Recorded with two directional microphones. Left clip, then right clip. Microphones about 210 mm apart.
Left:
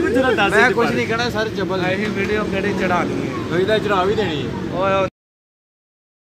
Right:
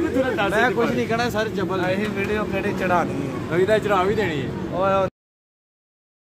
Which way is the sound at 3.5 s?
25° right (ahead or behind).